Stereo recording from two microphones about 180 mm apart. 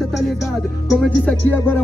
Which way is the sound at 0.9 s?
10° left (ahead or behind).